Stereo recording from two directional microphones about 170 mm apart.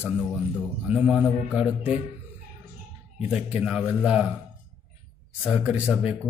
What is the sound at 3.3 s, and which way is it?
A man's voice, 5° right (ahead or behind).